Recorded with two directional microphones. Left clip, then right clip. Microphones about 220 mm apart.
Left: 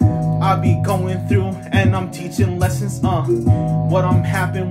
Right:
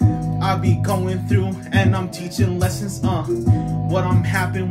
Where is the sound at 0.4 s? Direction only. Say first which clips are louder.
Left 4 dB; 20° left (ahead or behind).